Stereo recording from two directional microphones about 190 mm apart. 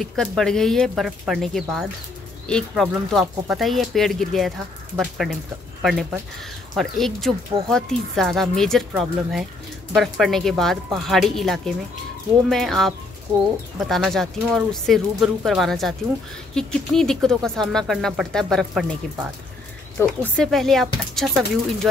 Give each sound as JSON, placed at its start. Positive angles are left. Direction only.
{"t": 0.0, "sound": "speech", "side_deg": 0}
{"t": 20.3, "sound": "speech", "side_deg": 0}